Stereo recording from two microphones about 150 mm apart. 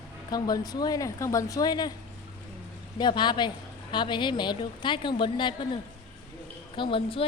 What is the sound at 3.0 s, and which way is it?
A woman's voice, 30° left (ahead or behind).